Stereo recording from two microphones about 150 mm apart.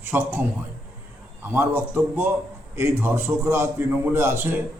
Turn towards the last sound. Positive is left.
turn(degrees=-15)  # may be behind; listen again after turning